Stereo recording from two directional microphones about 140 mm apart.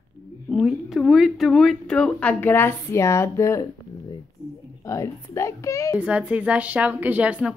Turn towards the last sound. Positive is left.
turn(degrees=-10)  # may be behind; listen again after turning